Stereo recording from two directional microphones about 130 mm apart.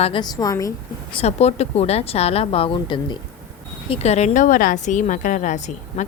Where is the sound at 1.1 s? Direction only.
55° left (ahead or behind); by 3.2 s 40° left (ahead or behind).